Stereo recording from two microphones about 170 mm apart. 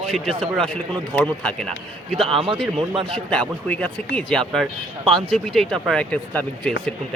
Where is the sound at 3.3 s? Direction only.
5° left (ahead or behind).